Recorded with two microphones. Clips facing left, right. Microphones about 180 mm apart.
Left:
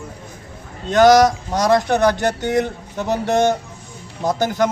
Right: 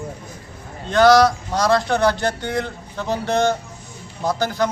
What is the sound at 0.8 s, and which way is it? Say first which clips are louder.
Speech: left 2 dB; 15° left (ahead or behind).